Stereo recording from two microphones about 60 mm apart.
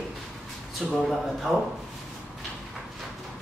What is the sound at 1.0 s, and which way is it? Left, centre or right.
Speech, centre.